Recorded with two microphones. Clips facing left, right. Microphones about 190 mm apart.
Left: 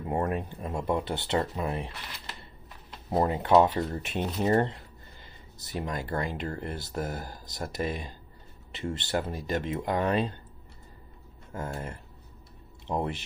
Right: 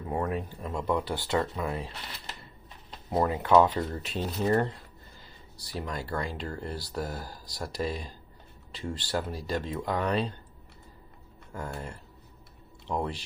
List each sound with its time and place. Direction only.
0.5 s speech: 25° left (ahead or behind)
3.1 s speech: 25° left (ahead or behind)
5.2 s a sound: 20° left (ahead or behind)
6.0 s speech: 20° left (ahead or behind)
10.0 s speech: 45° left (ahead or behind)
11.5 s speech: 20° left (ahead or behind)